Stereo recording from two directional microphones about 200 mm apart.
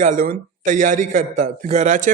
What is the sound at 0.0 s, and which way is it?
A man's voice, 40° right (ahead or behind).